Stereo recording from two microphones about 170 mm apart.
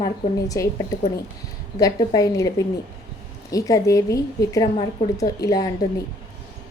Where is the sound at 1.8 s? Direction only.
20° left (ahead or behind).